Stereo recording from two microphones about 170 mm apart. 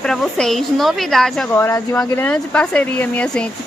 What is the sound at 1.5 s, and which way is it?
Speech, 15° left (ahead or behind).